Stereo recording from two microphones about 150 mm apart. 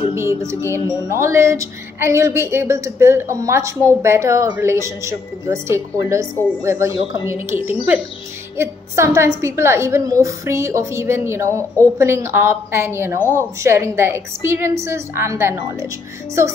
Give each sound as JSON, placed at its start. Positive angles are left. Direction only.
{"t": 0.1, "sound": "a woman's voice", "side_deg": -20}